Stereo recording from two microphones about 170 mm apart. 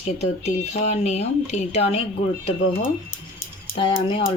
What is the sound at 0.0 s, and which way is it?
Speech, 40° left (ahead or behind).